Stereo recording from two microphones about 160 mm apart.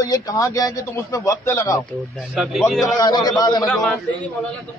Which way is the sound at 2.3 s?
Centre (ahead or behind).